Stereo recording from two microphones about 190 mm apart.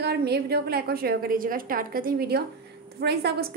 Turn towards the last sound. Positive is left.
turn(degrees=-60)  # may be behind; listen again after turning